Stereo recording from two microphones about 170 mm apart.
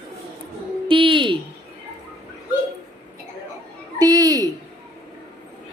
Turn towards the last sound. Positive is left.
turn(degrees=-20)  # may be behind; listen again after turning